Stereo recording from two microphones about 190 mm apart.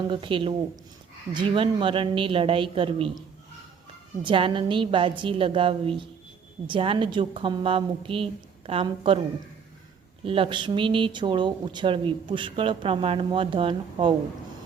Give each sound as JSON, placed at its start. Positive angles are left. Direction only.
{"t": 0.1, "sound": "speech", "side_deg": -25}
{"t": 4.2, "sound": "speech", "side_deg": -25}
{"t": 10.2, "sound": "speech", "side_deg": -30}